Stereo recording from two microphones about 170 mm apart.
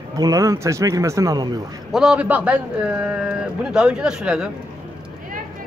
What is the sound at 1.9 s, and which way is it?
A man's voice, 5° right (ahead or behind).